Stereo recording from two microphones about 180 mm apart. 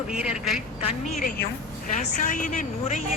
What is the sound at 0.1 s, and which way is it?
Speech, 5° right (ahead or behind).